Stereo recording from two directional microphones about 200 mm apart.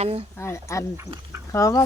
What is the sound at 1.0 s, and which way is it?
Speech, 15° right (ahead or behind).